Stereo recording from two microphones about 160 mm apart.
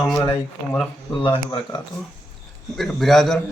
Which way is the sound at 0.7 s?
Centre (ahead or behind).